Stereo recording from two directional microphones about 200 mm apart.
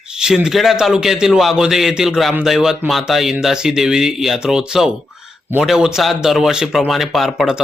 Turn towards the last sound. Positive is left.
turn(degrees=0)  # may be behind; listen again after turning